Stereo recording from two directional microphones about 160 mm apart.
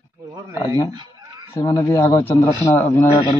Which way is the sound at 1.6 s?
20° left (ahead or behind).